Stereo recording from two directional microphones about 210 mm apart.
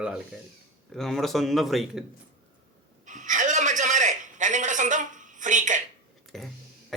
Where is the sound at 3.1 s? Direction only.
35° right (ahead or behind).